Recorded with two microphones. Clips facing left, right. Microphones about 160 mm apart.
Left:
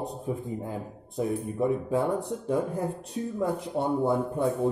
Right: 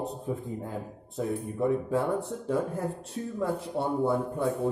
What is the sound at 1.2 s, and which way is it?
Speech, 15° left (ahead or behind).